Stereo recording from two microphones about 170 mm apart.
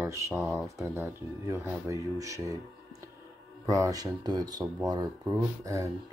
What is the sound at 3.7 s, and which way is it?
Speech, 20° right (ahead or behind).